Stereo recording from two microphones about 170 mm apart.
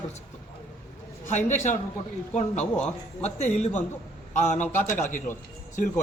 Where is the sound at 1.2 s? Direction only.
45° left (ahead or behind).